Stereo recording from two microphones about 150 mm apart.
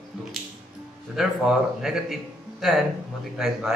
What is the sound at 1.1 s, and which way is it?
Speech, 5° right (ahead or behind).